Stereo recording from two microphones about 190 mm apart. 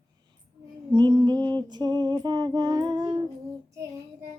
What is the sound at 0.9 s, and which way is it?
Female singing, 25° right (ahead or behind).